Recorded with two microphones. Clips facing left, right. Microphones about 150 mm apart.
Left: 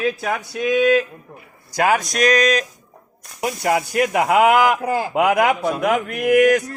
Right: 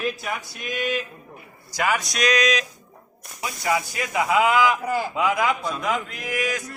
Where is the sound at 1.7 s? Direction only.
50° left (ahead or behind).